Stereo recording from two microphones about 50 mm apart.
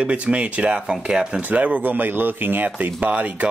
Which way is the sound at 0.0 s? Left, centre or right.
Right.